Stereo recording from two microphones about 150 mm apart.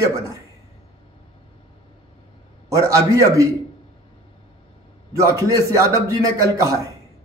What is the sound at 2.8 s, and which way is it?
Speech, 20° right (ahead or behind).